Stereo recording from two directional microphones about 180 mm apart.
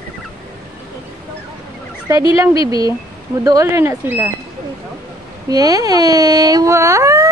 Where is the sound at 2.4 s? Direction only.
20° right (ahead or behind).